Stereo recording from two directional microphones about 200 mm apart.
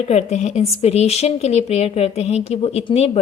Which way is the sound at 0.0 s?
35° left (ahead or behind).